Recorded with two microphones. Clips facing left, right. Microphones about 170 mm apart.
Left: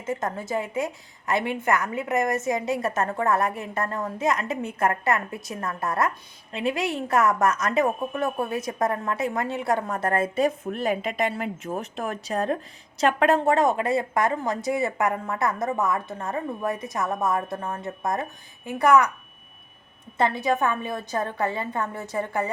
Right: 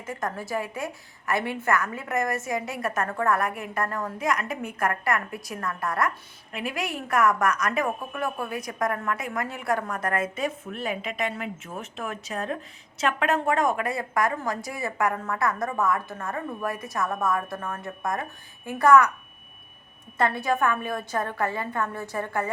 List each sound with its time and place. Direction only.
0.0 s a woman's voice: 20° left (ahead or behind)
20.5 s a woman's voice: 20° left (ahead or behind)